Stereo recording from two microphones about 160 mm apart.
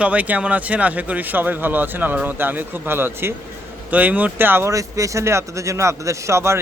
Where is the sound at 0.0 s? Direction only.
10° right (ahead or behind).